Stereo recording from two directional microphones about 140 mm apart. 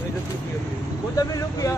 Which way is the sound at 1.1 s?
25° left (ahead or behind).